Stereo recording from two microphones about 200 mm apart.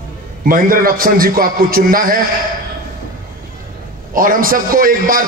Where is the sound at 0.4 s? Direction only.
45° right (ahead or behind).